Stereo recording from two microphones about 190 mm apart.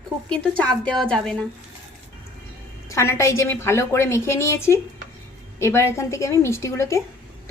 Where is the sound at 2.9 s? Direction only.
15° left (ahead or behind).